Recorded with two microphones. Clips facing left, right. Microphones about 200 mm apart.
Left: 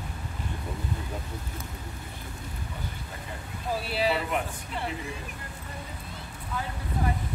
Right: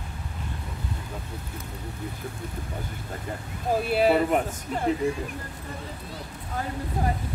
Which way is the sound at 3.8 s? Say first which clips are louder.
Right 7 dB; 50° right (ahead or behind).